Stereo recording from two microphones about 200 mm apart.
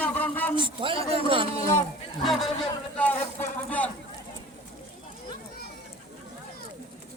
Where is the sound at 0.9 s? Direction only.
15° left (ahead or behind).